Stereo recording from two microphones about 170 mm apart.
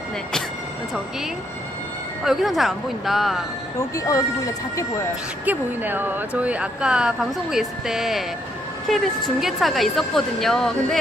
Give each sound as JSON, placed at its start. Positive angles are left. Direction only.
{"t": 2.2, "sound": "speech", "side_deg": 0}
{"t": 3.8, "sound": "speech", "side_deg": 20}
{"t": 5.5, "sound": "speech", "side_deg": -10}